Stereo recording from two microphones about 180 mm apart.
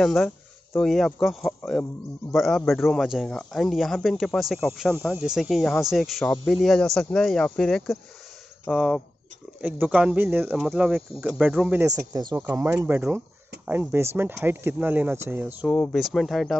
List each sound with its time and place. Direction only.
0.0 s speech: centre (ahead or behind)
11.8 s speech: 20° right (ahead or behind)
15.7 s speech: 5° left (ahead or behind)